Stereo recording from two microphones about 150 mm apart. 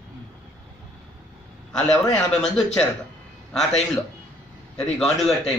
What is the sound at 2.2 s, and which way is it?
Speech, 5° left (ahead or behind).